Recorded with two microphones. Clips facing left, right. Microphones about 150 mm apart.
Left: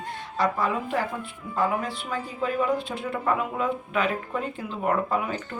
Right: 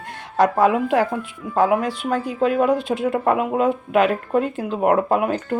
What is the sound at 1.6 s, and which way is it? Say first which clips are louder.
Speech: right 8 dB; 70° right (ahead or behind).